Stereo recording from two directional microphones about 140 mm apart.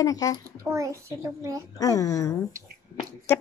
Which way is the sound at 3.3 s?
15° left (ahead or behind).